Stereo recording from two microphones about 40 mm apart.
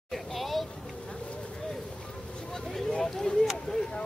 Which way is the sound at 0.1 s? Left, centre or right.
Centre.